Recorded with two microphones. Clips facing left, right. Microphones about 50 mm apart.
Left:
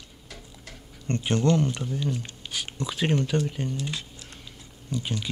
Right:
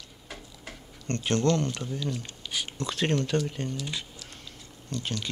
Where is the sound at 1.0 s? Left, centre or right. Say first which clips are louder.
Left 1 dB; centre.